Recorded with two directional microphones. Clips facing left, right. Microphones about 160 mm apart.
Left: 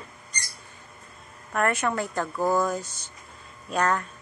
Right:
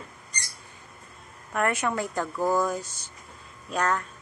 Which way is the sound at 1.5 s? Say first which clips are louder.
Left 1 dB; 10° right (ahead or behind).